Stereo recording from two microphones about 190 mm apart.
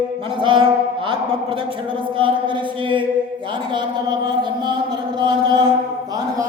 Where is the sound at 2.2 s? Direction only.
25° right (ahead or behind).